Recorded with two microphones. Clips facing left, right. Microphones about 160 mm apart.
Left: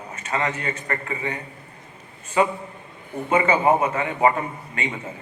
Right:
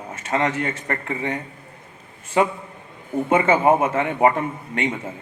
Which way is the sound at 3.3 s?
50° right (ahead or behind).